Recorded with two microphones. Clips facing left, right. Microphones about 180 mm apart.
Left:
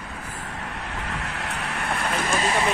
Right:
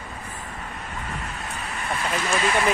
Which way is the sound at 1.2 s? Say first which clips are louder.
Left 2 dB; 70° left (ahead or behind).